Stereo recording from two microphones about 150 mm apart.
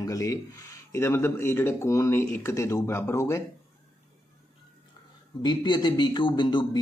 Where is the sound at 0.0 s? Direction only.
20° left (ahead or behind).